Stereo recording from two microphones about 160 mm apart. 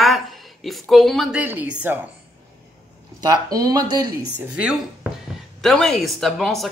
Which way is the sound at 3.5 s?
25° right (ahead or behind).